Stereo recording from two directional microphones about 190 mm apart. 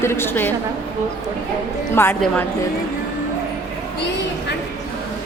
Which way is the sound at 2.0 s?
15° left (ahead or behind).